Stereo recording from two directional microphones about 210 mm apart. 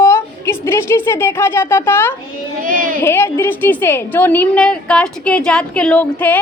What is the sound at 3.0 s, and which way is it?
A woman's voice, 10° left (ahead or behind).